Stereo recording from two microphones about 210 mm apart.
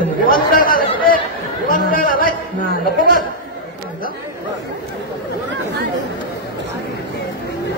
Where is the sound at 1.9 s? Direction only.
45° left (ahead or behind).